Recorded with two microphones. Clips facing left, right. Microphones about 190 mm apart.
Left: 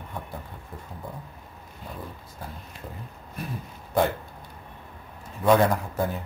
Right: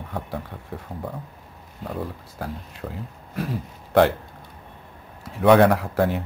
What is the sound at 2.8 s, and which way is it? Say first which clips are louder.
Speech: right 8 dB; 65° right (ahead or behind).